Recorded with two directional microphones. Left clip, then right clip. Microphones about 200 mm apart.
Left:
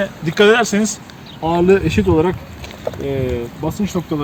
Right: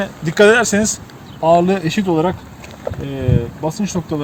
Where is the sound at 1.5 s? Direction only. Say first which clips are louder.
Right 1 dB; 50° right (ahead or behind).